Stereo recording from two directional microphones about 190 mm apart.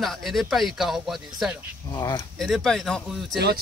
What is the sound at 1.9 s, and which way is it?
Speech, 20° left (ahead or behind).